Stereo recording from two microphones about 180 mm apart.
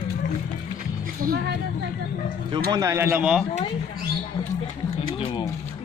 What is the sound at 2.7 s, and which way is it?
Speech, 20° right (ahead or behind).